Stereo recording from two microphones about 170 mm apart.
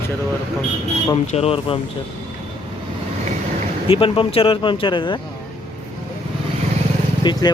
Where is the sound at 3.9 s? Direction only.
30° left (ahead or behind).